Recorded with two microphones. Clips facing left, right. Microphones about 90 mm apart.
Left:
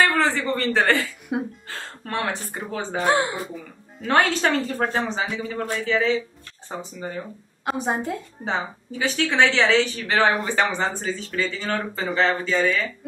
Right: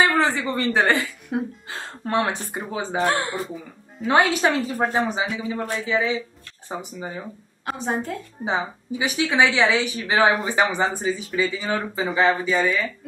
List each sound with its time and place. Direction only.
0.0 s a man's voice: 15° right (ahead or behind)
2.6 s speech: 10° right (ahead or behind)
7.7 s a woman's voice: 15° left (ahead or behind)
8.5 s speech: 15° right (ahead or behind)